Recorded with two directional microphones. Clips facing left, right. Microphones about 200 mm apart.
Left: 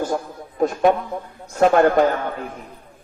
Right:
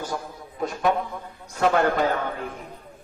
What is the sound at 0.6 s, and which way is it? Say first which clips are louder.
A man's voice: left 6 dB; 50° left (ahead or behind).